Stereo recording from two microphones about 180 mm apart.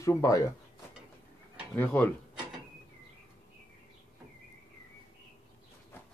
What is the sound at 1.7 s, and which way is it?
Speech, 10° left (ahead or behind).